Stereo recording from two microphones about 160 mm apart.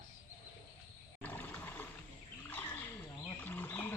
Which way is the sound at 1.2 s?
10° left (ahead or behind).